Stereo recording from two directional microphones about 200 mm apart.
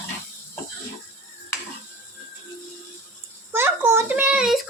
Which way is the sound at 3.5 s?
10° right (ahead or behind).